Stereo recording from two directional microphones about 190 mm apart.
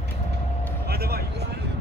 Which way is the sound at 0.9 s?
55° right (ahead or behind).